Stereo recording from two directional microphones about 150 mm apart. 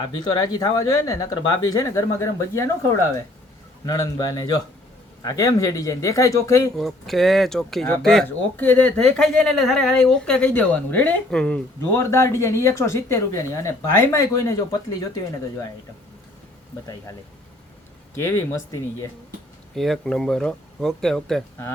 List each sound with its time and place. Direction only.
0.0 s speech: 25° left (ahead or behind)
3.8 s speech: 20° left (ahead or behind)
6.7 s speech: centre (ahead or behind)
11.8 s speech: 20° left (ahead or behind)
18.1 s speech: 15° left (ahead or behind)
19.7 s speech: centre (ahead or behind)